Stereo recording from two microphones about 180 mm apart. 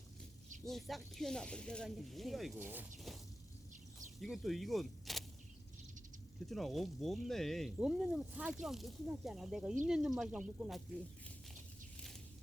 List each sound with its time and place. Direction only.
0.6 s speech: centre (ahead or behind)
2.6 s speech: 10° right (ahead or behind)
4.2 s speech: centre (ahead or behind)
6.4 s speech: centre (ahead or behind)